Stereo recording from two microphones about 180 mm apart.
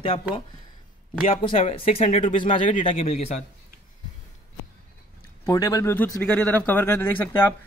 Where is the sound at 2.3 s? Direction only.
30° left (ahead or behind).